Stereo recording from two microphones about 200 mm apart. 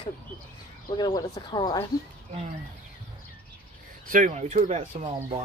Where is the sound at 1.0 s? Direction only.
20° left (ahead or behind).